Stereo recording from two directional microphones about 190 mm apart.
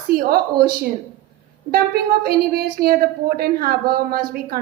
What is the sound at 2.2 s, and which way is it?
A woman's voice, 55° right (ahead or behind).